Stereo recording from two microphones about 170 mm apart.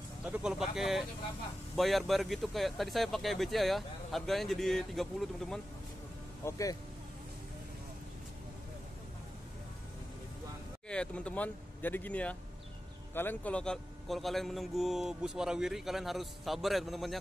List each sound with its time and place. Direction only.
0.2 s a man's voice: 5° right (ahead or behind)
6.4 s speech: 20° left (ahead or behind)
10.9 s a man's voice: 5° left (ahead or behind)